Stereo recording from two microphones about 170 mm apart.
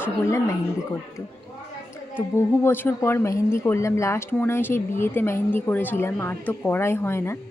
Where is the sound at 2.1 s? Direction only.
15° left (ahead or behind).